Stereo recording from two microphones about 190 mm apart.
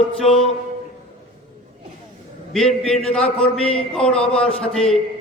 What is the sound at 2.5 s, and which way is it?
A man's voice, centre (ahead or behind).